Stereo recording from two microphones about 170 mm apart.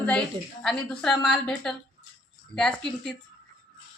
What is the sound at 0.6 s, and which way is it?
Speech, 5° left (ahead or behind).